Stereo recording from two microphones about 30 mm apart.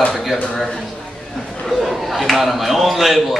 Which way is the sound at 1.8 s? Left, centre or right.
Centre.